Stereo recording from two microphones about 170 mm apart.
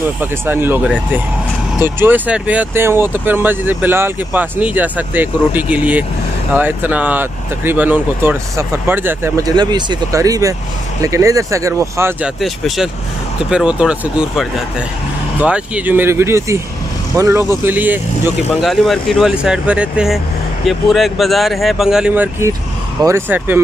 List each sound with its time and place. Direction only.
0.0 s speech: 10° right (ahead or behind)
12.4 s speech: centre (ahead or behind)